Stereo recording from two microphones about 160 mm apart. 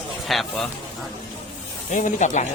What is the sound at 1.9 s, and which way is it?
Speech, 50° left (ahead or behind).